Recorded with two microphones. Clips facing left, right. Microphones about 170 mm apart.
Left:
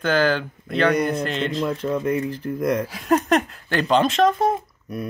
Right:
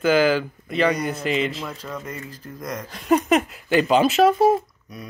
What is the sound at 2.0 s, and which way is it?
Speech, 60° left (ahead or behind).